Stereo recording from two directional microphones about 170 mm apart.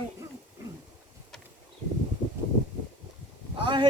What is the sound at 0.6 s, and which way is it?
Wild animals, 15° right (ahead or behind).